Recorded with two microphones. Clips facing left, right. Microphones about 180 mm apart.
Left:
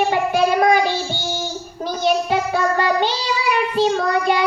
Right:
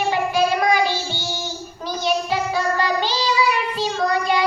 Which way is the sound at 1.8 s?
55° left (ahead or behind).